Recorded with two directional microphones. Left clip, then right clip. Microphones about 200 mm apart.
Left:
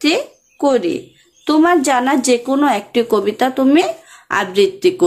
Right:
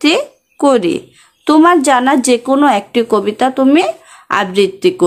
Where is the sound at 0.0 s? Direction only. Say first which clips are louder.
Right 4 dB; 25° right (ahead or behind).